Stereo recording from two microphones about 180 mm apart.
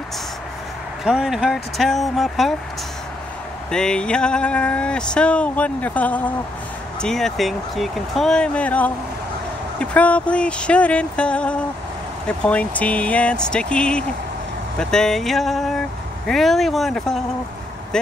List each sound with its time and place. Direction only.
1.0 s speech: 5° right (ahead or behind)
3.7 s speech: 5° left (ahead or behind)
9.8 s a sound: 5° left (ahead or behind)
14.8 s speech: 5° left (ahead or behind)